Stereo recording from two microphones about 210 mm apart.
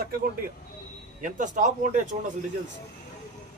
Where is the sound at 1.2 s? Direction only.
40° right (ahead or behind).